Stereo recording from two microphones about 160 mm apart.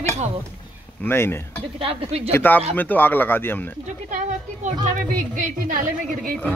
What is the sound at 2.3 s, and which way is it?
A man's voice, 10° left (ahead or behind).